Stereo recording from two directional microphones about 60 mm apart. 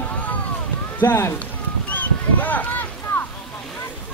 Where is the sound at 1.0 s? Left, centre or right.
Left.